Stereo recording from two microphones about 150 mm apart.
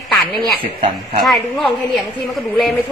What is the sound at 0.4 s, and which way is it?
Speech, 35° right (ahead or behind).